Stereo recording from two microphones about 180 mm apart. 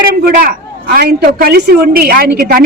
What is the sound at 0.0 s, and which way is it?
A woman's voice, 60° right (ahead or behind).